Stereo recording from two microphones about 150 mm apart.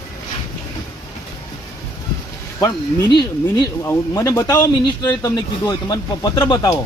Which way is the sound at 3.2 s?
30° left (ahead or behind).